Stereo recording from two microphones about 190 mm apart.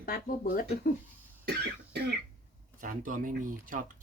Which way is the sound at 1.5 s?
60° right (ahead or behind).